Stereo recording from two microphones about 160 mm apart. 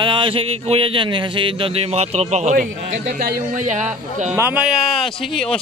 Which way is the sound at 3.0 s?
70° right (ahead or behind).